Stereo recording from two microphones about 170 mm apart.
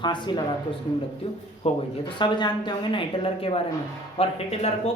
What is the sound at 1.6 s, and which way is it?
A woman's voice, 35° left (ahead or behind).